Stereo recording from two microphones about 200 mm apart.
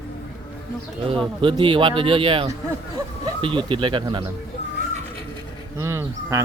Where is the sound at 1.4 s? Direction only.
25° right (ahead or behind).